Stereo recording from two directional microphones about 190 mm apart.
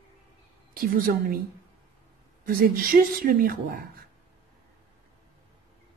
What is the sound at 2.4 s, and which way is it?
A woman's voice, 50° right (ahead or behind).